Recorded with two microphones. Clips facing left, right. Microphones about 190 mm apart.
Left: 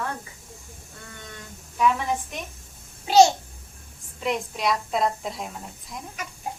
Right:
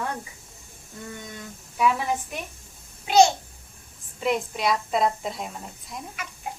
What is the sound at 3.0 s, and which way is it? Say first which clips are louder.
Speech: left 1 dB; 40° left (ahead or behind).